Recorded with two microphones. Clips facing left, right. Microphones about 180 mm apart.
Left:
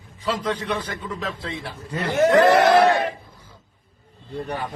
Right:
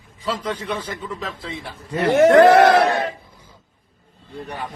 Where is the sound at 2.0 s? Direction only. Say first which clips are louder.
Right 5 dB; 70° right (ahead or behind).